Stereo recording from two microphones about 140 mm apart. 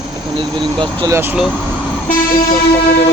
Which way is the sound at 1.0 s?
20° right (ahead or behind).